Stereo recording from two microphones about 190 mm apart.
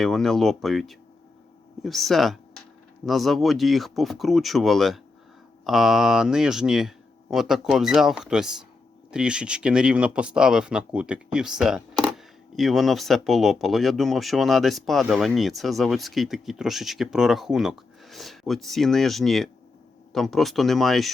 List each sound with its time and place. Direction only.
0.0 s speech: centre (ahead or behind)